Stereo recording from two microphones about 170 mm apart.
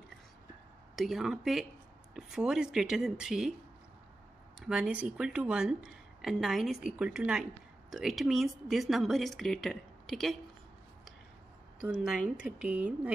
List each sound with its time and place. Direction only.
0.9 s speech: centre (ahead or behind)
4.6 s speech: 5° right (ahead or behind)
11.9 s speech: 5° right (ahead or behind)